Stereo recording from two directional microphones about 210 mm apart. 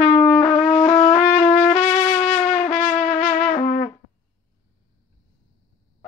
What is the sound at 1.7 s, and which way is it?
Music, 35° left (ahead or behind).